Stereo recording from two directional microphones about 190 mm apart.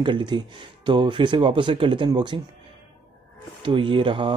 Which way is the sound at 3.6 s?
25° right (ahead or behind).